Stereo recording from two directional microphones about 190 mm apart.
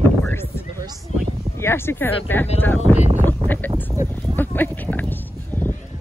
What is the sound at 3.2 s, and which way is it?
Speech, 10° left (ahead or behind).